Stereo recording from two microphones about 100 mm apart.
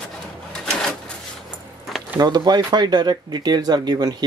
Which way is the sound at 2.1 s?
40° right (ahead or behind).